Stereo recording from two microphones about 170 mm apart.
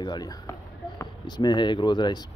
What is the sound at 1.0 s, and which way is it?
Speech, 25° left (ahead or behind).